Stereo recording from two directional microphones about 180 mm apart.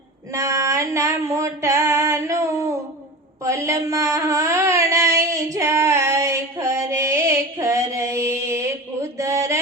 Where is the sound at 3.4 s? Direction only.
15° right (ahead or behind).